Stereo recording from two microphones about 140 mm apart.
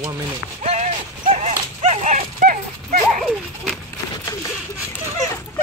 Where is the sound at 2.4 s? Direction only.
70° right (ahead or behind).